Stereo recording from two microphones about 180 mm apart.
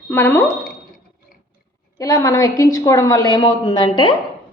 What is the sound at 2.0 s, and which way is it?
A woman's voice, 20° left (ahead or behind).